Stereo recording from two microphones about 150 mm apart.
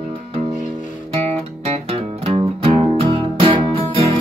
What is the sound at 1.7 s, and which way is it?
Music, 45° right (ahead or behind).